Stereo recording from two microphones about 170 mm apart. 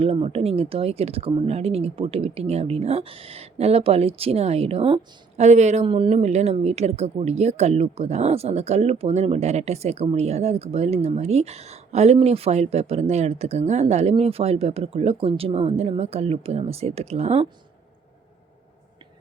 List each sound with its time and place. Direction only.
0.0 s speech: 35° right (ahead or behind)